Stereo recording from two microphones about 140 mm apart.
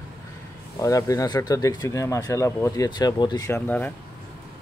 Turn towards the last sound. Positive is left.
turn(degrees=10)  # may be behind; listen again after turning